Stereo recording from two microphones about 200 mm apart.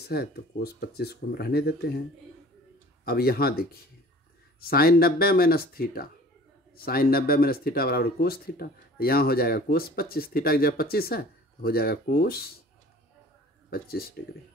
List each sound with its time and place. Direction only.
0.0 s speech: 50° left (ahead or behind)
3.1 s speech: 50° left (ahead or behind)
13.7 s speech: 50° left (ahead or behind)